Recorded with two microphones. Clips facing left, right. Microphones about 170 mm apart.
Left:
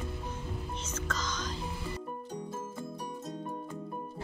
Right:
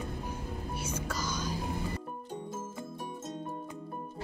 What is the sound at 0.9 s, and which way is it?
Music, 10° right (ahead or behind).